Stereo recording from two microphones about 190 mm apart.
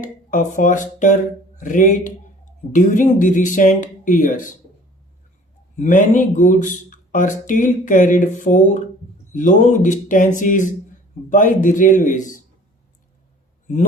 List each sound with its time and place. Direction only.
0.0 s speech: 45° left (ahead or behind)
5.7 s speech: 45° left (ahead or behind)